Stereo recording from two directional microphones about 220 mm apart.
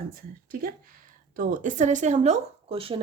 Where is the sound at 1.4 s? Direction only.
40° right (ahead or behind).